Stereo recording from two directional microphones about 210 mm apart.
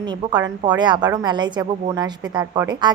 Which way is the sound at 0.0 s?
20° right (ahead or behind).